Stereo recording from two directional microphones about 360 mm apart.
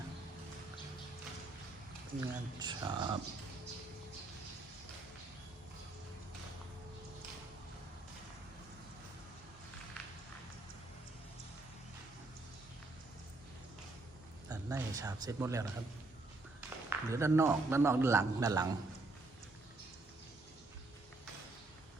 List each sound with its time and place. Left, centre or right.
2.2 s speech: centre
14.5 s a sound: centre
16.6 s a man's voice: centre